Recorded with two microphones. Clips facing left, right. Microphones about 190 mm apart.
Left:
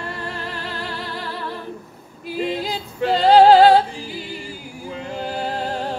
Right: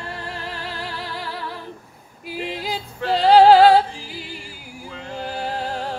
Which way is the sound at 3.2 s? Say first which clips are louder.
Even; 10° right (ahead or behind).